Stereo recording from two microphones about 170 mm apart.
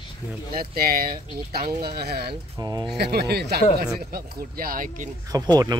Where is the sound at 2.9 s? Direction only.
70° right (ahead or behind); by 5.0 s 55° right (ahead or behind).